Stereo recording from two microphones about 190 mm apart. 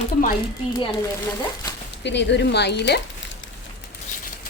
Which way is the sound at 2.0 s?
65° left (ahead or behind).